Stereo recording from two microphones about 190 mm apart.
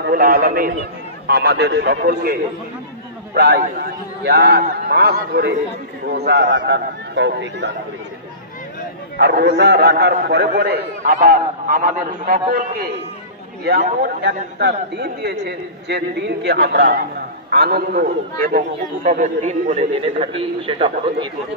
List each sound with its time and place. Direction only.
0.0 s a man's voice: 50° right (ahead or behind)
3.3 s a man's voice: 55° right (ahead or behind)
6.5 s speech: 70° right (ahead or behind)
9.1 s a man's voice: 55° right (ahead or behind)
14.0 s a man's voice: 60° right (ahead or behind)
19.0 s a man's voice: 40° right (ahead or behind)